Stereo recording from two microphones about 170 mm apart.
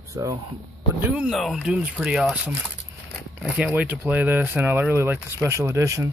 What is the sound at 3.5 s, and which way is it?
Speech, 5° right (ahead or behind).